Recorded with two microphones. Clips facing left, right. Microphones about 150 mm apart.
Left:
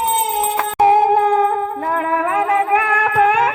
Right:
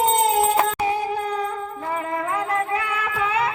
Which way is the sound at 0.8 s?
60° left (ahead or behind).